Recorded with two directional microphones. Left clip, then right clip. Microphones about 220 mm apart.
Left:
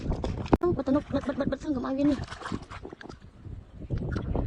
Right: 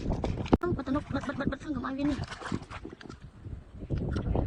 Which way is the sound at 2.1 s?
Centre (ahead or behind).